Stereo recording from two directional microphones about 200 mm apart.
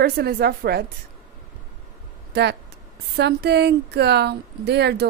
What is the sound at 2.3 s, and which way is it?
Speech, 55° right (ahead or behind).